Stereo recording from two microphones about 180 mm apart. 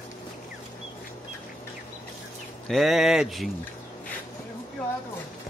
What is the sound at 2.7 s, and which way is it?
Speech, centre (ahead or behind).